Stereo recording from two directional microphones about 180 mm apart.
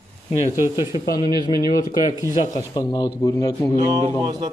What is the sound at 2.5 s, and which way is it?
Speech, 20° left (ahead or behind).